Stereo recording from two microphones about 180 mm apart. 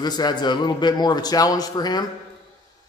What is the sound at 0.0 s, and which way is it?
A man's voice, 25° left (ahead or behind).